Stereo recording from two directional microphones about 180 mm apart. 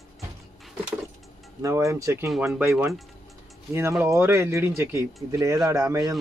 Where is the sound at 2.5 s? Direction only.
5° right (ahead or behind).